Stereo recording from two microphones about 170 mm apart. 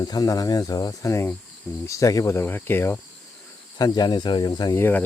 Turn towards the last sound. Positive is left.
turn(degrees=25)  # may be behind; listen again after turning